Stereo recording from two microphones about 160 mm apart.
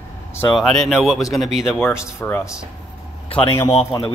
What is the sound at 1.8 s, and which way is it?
Speech, 15° left (ahead or behind).